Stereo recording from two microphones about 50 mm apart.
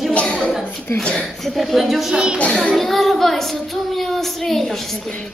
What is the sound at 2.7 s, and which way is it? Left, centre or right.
Speech, centre.